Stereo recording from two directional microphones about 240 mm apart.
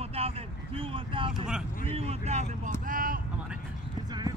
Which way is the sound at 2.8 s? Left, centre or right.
Right.